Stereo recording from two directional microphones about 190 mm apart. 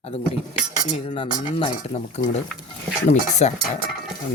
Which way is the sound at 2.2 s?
35° left (ahead or behind).